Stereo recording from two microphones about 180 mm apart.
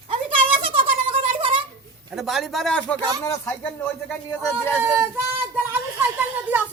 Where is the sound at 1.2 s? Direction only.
30° right (ahead or behind).